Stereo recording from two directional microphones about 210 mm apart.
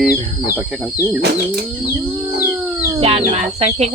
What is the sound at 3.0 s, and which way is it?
Speech, 30° right (ahead or behind).